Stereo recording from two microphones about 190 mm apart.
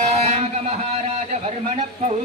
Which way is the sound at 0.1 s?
35° right (ahead or behind).